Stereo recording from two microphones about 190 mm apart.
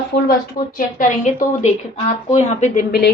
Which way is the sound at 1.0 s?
40° left (ahead or behind).